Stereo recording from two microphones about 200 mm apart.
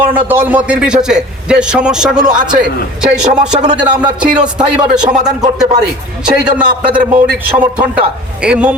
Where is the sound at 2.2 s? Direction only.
40° right (ahead or behind).